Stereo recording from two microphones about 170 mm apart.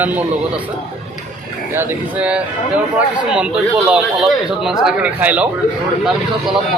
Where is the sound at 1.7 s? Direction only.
5° right (ahead or behind).